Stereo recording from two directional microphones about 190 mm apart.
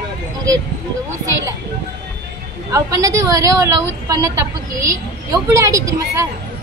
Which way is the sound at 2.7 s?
15° right (ahead or behind).